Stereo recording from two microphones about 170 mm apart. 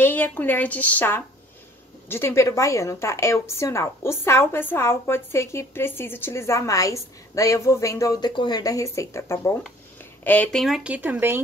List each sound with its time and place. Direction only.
0.0 s a woman's voice: 10° left (ahead or behind); by 11.4 s 15° right (ahead or behind)